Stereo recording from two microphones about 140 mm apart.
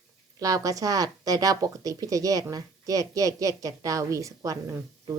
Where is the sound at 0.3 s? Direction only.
25° right (ahead or behind).